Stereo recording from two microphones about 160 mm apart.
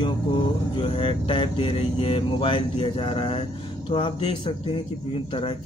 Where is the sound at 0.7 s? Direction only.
30° left (ahead or behind).